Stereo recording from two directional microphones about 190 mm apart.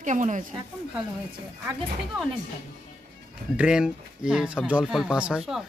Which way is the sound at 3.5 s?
5° right (ahead or behind).